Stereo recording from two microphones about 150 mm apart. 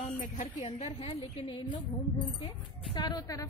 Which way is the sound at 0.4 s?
50° left (ahead or behind).